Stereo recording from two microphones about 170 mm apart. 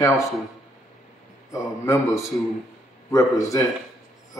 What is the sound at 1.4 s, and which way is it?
A man's voice, 15° left (ahead or behind).